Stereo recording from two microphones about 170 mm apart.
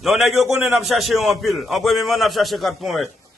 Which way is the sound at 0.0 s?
Centre (ahead or behind).